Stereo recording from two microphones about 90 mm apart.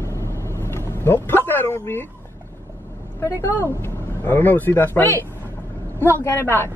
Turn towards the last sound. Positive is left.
turn(degrees=25)  # may be behind; listen again after turning